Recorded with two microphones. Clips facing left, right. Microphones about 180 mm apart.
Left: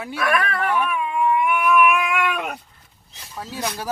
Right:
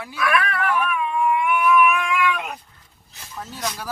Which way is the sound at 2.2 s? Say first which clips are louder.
Right 1 dB; 65° left (ahead or behind).